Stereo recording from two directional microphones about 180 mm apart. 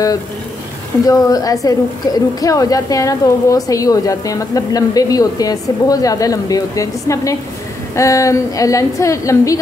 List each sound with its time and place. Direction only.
1.0 s a woman's voice: 20° left (ahead or behind)